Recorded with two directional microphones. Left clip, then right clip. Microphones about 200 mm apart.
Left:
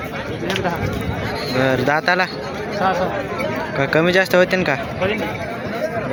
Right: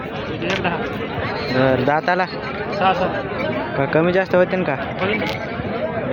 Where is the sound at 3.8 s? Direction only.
Centre (ahead or behind).